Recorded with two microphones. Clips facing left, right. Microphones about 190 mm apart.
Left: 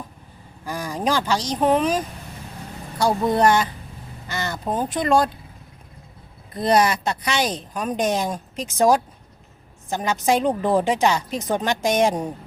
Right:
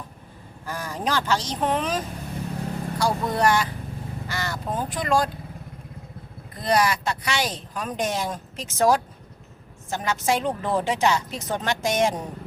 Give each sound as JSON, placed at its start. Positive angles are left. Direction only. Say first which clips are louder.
{"t": 0.6, "sound": "speech", "louder": "left 4 dB", "side_deg": 15}
{"t": 3.0, "sound": "speech", "louder": "left 5 dB", "side_deg": 25}
{"t": 6.6, "sound": "speech", "louder": "left 4 dB", "side_deg": 25}